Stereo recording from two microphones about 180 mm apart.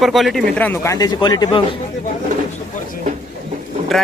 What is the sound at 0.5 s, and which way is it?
Speech, 10° left (ahead or behind).